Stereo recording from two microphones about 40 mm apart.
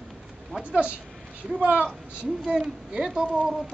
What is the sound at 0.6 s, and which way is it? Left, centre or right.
Speech, right.